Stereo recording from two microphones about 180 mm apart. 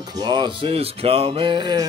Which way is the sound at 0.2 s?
25° right (ahead or behind).